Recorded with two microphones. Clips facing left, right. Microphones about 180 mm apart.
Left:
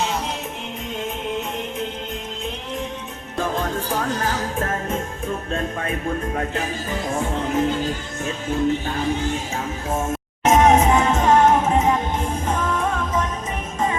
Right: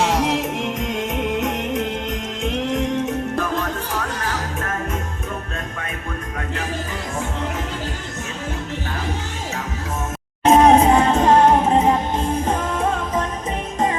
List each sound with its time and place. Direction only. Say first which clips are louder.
0.0 s music: right 6 dB; 80° right
2.4 s music: right 10 dB; 75° right (ahead or behind)
10.4 s music: right 3 dB; 35° right (ahead or behind)